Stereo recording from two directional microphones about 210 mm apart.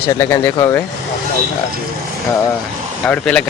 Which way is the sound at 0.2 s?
15° left (ahead or behind).